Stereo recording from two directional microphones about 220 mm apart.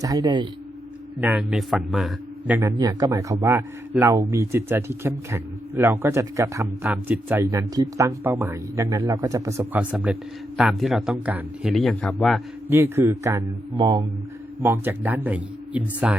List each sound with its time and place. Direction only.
0.0 s a man's voice: 15° right (ahead or behind)
1.2 s a man's voice: 5° right (ahead or behind)
2.6 s a man's voice: 15° right (ahead or behind); by 12.4 s centre (ahead or behind)
12.6 s a man's voice: 10° right (ahead or behind)
14.6 s a man's voice: 10° right (ahead or behind)